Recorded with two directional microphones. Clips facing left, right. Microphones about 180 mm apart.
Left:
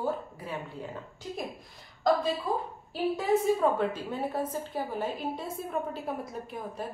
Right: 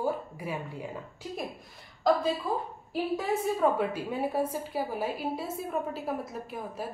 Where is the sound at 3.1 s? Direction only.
5° right (ahead or behind).